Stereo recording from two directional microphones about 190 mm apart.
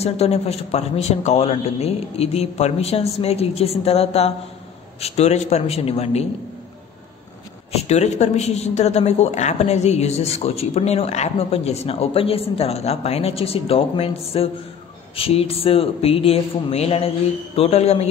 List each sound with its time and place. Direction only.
0.0 s a woman's voice: 35° left (ahead or behind)
7.7 s a woman's voice: 35° left (ahead or behind)